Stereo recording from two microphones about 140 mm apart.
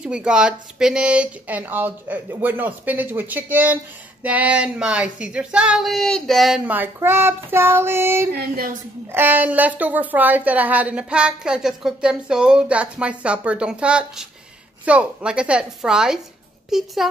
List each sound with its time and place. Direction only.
0.0 s speech: 5° right (ahead or behind)
8.4 s speech: 90° right
9.1 s a child's voice: 15° right (ahead or behind)